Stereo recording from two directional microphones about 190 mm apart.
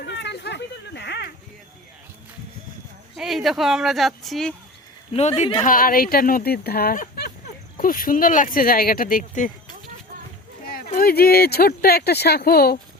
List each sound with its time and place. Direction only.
0.0 s a sound: 65° left (ahead or behind)
3.2 s speech: centre (ahead or behind)
5.1 s speech: 35° left (ahead or behind)
10.9 s speech: 55° left (ahead or behind)